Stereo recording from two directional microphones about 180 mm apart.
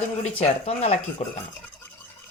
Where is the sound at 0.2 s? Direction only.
35° left (ahead or behind).